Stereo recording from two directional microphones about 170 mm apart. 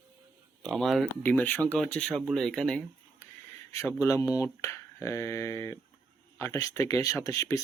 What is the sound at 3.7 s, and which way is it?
Speech, 15° left (ahead or behind).